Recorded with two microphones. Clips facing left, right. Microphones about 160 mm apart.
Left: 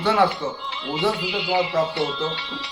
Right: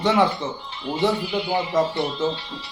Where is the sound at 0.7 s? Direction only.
90° left.